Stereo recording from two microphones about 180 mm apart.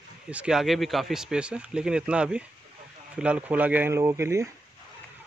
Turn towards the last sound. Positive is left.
turn(degrees=-15)  # may be behind; listen again after turning